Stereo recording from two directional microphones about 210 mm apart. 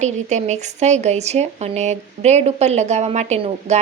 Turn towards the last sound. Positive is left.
turn(degrees=-30)  # may be behind; listen again after turning